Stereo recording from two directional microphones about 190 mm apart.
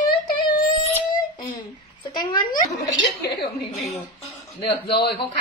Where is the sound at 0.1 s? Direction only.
25° left (ahead or behind).